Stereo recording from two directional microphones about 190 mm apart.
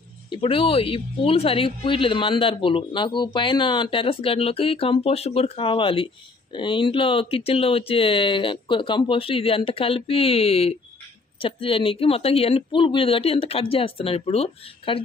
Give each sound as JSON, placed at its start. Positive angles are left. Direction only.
{"t": 0.3, "sound": "speech", "side_deg": 25}